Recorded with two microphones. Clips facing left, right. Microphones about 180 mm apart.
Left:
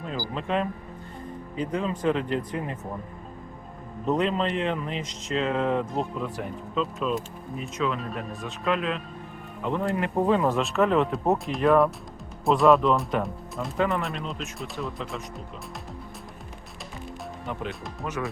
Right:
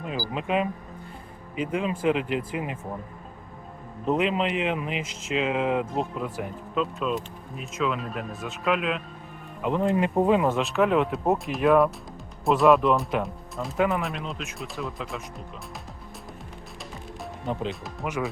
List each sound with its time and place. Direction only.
0.0 s speech: 10° right (ahead or behind)
4.0 s speech: 5° right (ahead or behind)
9.6 s speech: 15° right (ahead or behind)
10.5 s speech: centre (ahead or behind)
18.0 s speech: 15° right (ahead or behind)